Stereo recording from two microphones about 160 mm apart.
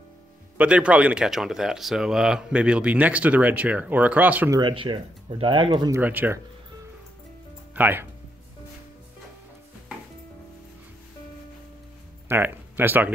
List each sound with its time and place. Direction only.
0.6 s speech: 10° right (ahead or behind)
4.5 s speech: 30° right (ahead or behind)
5.9 s speech: 10° right (ahead or behind)
7.7 s speech: 10° right (ahead or behind)
12.3 s speech: 10° right (ahead or behind)